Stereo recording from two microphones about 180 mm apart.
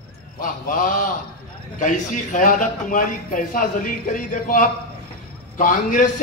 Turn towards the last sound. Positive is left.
turn(degrees=45)  # may be behind; listen again after turning